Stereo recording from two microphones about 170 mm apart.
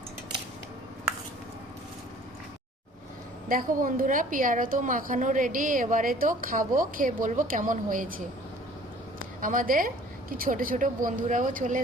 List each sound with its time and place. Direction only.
3.5 s a woman's voice: 55° right (ahead or behind)